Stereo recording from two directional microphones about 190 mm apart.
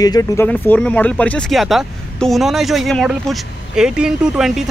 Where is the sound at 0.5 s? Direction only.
5° left (ahead or behind).